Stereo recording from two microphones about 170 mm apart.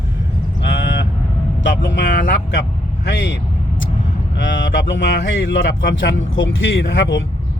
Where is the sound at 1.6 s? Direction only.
90° left.